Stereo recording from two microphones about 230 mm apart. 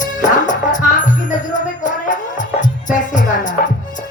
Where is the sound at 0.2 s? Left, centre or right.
Left.